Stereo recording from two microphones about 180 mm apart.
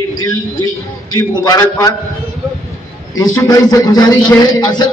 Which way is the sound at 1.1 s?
20° left (ahead or behind).